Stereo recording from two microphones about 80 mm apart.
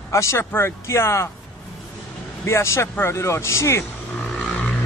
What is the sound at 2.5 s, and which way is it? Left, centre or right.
Speech, left.